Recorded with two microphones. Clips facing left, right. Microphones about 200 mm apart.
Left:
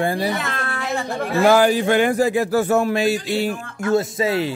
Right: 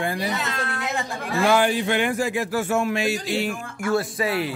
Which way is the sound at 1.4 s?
35° left (ahead or behind).